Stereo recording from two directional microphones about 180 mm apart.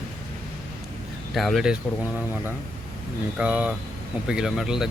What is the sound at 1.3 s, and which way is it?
Speech, centre (ahead or behind).